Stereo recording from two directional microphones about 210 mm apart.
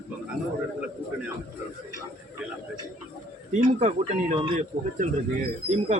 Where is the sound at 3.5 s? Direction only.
35° right (ahead or behind).